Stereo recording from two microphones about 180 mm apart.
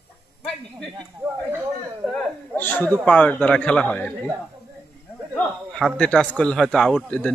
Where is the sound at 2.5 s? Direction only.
10° left (ahead or behind).